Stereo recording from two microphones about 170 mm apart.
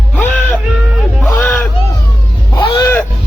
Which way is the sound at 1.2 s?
10° left (ahead or behind).